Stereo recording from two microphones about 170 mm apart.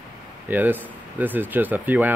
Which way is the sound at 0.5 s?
10° right (ahead or behind).